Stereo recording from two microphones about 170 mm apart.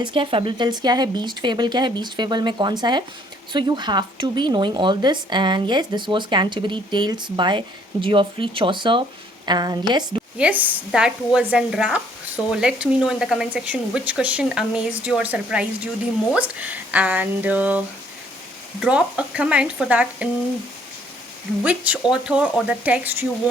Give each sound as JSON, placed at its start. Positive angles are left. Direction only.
{"t": 0.0, "sound": "speech", "side_deg": -30}
{"t": 10.3, "sound": "speech", "side_deg": -10}
{"t": 21.6, "sound": "speech", "side_deg": -5}